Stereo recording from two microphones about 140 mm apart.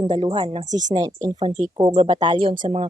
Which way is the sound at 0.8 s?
25° right (ahead or behind).